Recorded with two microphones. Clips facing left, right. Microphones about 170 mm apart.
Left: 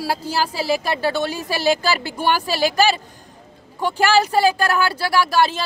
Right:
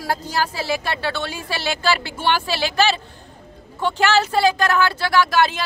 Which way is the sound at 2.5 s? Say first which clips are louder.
Left 4 dB; 40° left (ahead or behind).